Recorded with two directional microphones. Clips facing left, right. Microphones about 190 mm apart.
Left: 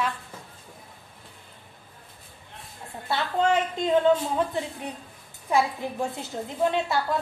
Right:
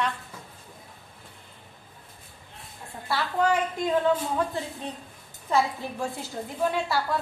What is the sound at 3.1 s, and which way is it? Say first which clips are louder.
A woman's voice: left 1 dB; 25° left (ahead or behind).